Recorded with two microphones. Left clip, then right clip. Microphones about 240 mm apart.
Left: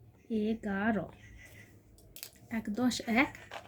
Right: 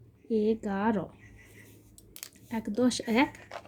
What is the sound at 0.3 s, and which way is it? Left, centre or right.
Speech, centre.